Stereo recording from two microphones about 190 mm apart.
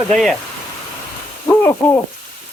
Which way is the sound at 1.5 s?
15° left (ahead or behind).